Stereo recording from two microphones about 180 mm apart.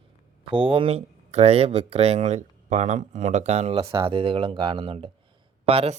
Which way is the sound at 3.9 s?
25° right (ahead or behind).